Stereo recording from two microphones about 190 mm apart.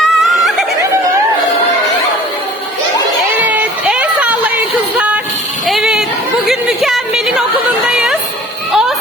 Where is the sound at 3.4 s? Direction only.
10° right (ahead or behind).